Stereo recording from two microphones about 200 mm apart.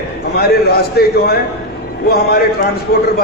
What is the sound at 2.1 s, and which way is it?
Speech, 50° left (ahead or behind).